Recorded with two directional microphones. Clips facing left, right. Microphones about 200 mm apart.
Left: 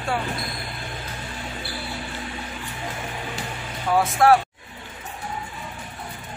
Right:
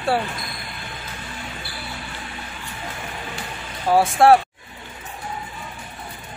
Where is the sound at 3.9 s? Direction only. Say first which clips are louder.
Right 3 dB; 30° right (ahead or behind).